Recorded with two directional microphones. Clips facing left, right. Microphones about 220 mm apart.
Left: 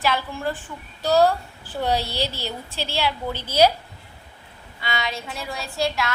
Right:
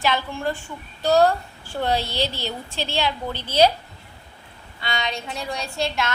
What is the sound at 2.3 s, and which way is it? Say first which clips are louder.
Speech: right 1 dB; 35° left (ahead or behind).